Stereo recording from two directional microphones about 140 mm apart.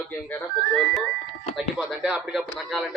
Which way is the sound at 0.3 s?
10° left (ahead or behind).